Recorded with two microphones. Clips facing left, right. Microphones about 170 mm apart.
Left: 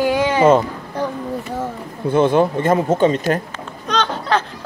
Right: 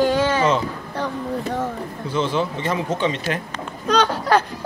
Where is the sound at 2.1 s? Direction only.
55° left (ahead or behind).